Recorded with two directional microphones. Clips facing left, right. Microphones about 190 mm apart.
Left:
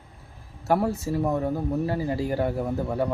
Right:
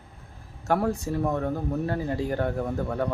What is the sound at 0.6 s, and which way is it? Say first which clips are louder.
Speech: left 1 dB; 5° left (ahead or behind).